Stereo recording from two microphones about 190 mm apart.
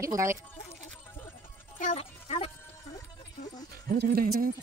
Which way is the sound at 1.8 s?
35° left (ahead or behind).